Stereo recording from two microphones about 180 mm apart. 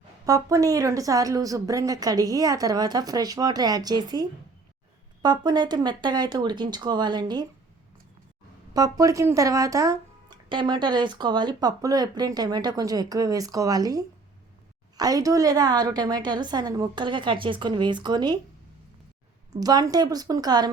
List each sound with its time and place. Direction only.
0.3 s speech: 20° right (ahead or behind)
8.7 s speech: 20° right (ahead or behind)
19.5 s speech: 20° right (ahead or behind)